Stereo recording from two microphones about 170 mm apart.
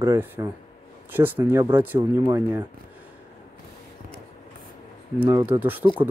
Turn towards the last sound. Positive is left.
turn(degrees=-10)  # may be behind; listen again after turning